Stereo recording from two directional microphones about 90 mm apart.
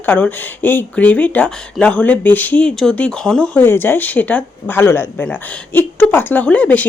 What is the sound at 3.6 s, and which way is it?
Speech, 25° left (ahead or behind).